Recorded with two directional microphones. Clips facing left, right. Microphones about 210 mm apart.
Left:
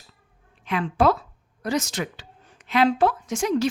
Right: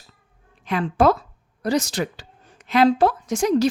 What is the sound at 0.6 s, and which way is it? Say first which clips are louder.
A woman's voice: right 2 dB; 40° right (ahead or behind).